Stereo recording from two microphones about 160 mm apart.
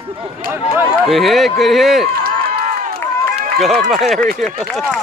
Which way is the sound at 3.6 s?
Centre (ahead or behind).